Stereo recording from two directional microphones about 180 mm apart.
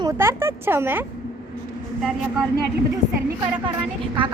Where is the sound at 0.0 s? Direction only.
15° right (ahead or behind).